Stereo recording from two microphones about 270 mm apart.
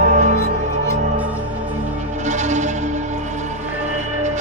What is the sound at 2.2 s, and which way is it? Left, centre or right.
Music, right.